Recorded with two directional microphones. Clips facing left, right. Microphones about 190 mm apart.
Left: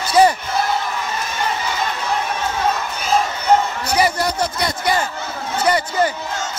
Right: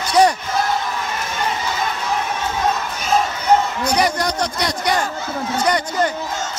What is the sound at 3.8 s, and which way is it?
A man's voice, 5° left (ahead or behind).